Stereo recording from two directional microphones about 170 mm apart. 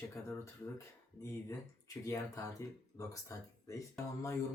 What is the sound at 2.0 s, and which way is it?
Speech, 20° left (ahead or behind).